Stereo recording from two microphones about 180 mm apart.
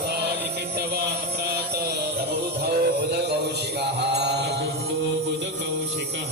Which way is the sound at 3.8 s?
70° right (ahead or behind).